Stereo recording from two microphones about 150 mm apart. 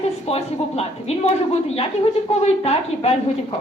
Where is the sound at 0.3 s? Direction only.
40° left (ahead or behind).